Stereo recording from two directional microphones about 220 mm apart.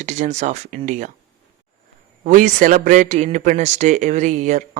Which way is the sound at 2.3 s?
35° right (ahead or behind).